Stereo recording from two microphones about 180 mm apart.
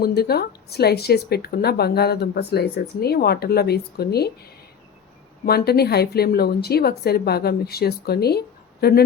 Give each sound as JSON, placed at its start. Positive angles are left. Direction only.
{"t": 0.0, "sound": "speech", "side_deg": 60}
{"t": 5.5, "sound": "speech", "side_deg": 60}